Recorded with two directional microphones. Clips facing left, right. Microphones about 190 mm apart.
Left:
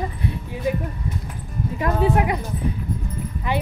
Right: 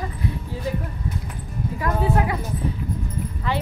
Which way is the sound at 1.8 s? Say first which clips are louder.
Left 2 dB; 20° left (ahead or behind).